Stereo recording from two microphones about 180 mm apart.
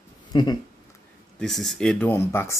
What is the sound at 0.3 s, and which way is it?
Speech, 25° left (ahead or behind).